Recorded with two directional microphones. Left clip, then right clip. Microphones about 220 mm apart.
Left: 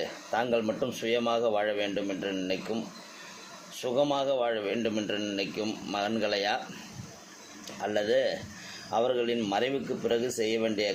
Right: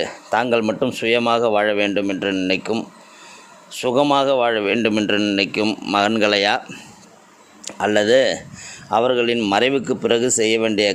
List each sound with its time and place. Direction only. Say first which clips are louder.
0.0 s a man's voice: right 10 dB; 45° right (ahead or behind)
7.6 s a man's voice: right 12 dB; 50° right (ahead or behind)